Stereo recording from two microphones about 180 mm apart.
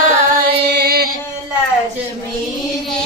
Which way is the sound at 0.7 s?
60° right (ahead or behind).